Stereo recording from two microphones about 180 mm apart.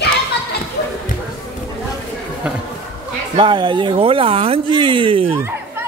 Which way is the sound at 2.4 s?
5° right (ahead or behind).